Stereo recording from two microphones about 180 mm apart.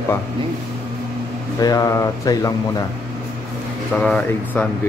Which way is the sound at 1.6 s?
20° left (ahead or behind).